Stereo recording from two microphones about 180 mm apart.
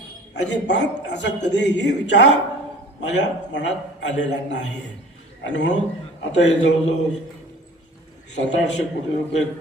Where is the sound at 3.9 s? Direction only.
80° left.